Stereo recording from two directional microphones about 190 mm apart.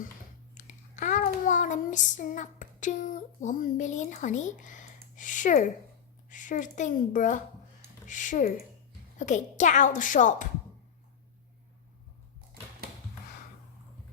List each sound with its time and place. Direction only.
0.5 s child singing: 40° left (ahead or behind)
6.2 s a woman's voice: 40° left (ahead or behind)